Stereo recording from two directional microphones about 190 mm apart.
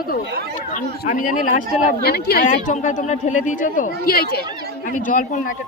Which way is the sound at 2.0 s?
55° left (ahead or behind).